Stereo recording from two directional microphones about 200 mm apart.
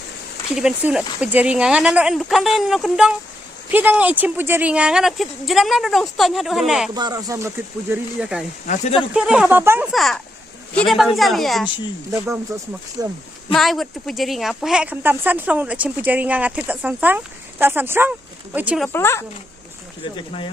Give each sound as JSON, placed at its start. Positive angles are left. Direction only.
{"t": 0.5, "sound": "speech", "side_deg": -5}
{"t": 6.9, "sound": "speech", "side_deg": -20}
{"t": 8.6, "sound": "speech", "side_deg": 35}
{"t": 9.0, "sound": "speech", "side_deg": -5}
{"t": 9.9, "sound": "speech", "side_deg": 0}
{"t": 12.1, "sound": "speech", "side_deg": -15}
{"t": 13.5, "sound": "speech", "side_deg": 0}
{"t": 18.9, "sound": "a woman's voice", "side_deg": 10}
{"t": 20.1, "sound": "speech", "side_deg": 25}